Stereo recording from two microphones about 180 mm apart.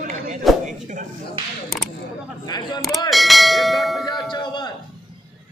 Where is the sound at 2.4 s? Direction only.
25° left (ahead or behind).